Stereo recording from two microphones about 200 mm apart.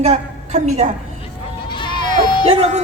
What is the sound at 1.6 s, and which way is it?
Bleat, 25° left (ahead or behind).